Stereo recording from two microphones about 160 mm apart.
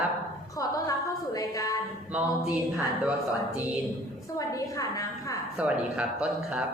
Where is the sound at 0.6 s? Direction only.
20° left (ahead or behind).